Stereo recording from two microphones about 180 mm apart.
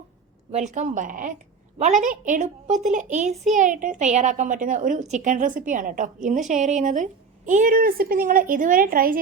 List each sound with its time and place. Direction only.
0.5 s speech: 40° right (ahead or behind)